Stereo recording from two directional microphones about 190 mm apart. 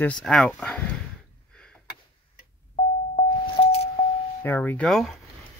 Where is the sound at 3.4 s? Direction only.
30° left (ahead or behind).